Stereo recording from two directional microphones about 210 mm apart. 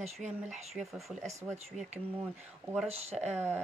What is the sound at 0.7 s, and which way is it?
Speech, centre (ahead or behind).